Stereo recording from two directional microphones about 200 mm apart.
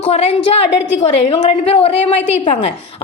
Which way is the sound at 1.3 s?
30° left (ahead or behind).